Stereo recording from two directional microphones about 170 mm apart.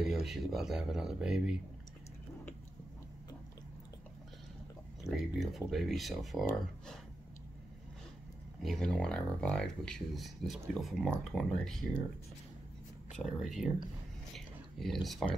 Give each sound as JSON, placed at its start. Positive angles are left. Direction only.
{"t": 0.0, "sound": "speech", "side_deg": 0}
{"t": 5.1, "sound": "speech", "side_deg": 0}
{"t": 8.6, "sound": "speech", "side_deg": 5}
{"t": 13.2, "sound": "speech", "side_deg": 0}
{"t": 14.3, "sound": "a sound", "side_deg": 0}